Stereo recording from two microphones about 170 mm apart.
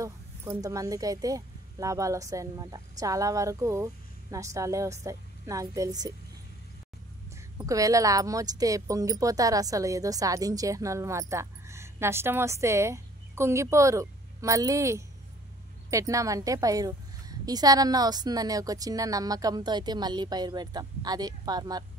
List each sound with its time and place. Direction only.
0.0 s a woman's voice: 20° right (ahead or behind)
7.3 s a woman's voice: 20° right (ahead or behind)